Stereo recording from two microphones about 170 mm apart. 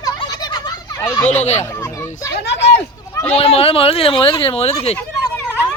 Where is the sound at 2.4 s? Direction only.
85° left.